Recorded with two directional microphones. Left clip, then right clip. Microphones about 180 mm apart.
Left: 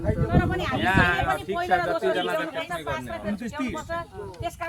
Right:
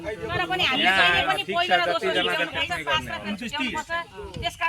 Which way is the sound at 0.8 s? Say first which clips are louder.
Right 2 dB; 25° right (ahead or behind).